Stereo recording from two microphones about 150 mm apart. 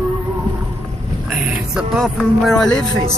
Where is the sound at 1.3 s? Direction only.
10° right (ahead or behind).